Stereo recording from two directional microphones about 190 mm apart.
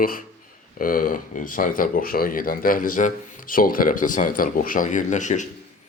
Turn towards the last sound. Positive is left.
turn(degrees=40)  # may be behind; listen again after turning